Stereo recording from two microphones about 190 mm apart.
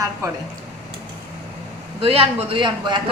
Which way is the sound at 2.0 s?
30° right (ahead or behind).